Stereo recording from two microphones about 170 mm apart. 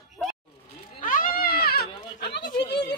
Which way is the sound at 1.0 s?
55° left (ahead or behind).